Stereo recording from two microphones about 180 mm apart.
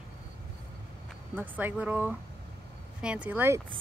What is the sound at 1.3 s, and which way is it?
Speech, 10° right (ahead or behind).